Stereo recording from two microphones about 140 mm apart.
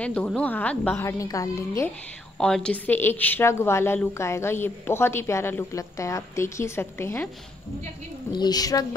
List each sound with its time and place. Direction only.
0.0 s a woman's voice: 10° left (ahead or behind)
2.3 s a woman's voice: 5° left (ahead or behind)
8.3 s a woman's voice: 30° left (ahead or behind)